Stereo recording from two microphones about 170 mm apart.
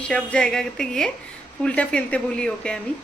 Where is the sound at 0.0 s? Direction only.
5° left (ahead or behind).